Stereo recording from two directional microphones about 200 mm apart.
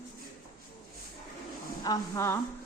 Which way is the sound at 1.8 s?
15° left (ahead or behind).